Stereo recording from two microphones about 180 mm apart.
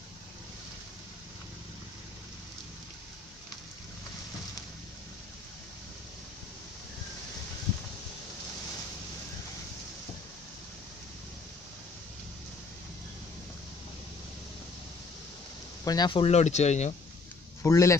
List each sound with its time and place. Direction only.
15.8 s speech: 20° left (ahead or behind); by 16.9 s 40° left (ahead or behind)
17.6 s speech: 15° left (ahead or behind)